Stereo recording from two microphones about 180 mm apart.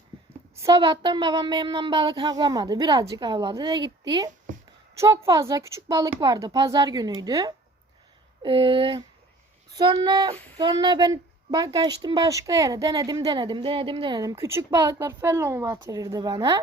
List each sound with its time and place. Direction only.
0.5 s speech: 20° right (ahead or behind)
10.3 s female singing: 10° left (ahead or behind)
10.6 s speech: 25° right (ahead or behind)